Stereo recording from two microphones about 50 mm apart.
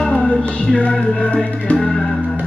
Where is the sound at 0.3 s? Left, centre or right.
Centre.